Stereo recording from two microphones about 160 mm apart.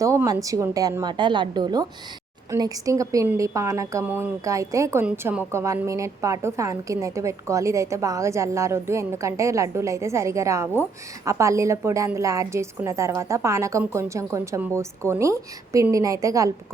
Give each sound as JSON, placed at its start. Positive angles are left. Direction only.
{"t": 0.0, "sound": "a woman's voice", "side_deg": -20}